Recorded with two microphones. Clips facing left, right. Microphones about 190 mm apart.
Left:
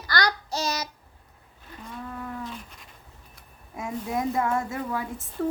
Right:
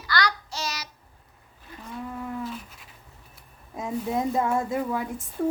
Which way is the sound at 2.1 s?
15° right (ahead or behind).